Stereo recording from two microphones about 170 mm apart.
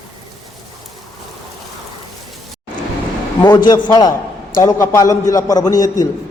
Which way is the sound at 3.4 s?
25° left (ahead or behind).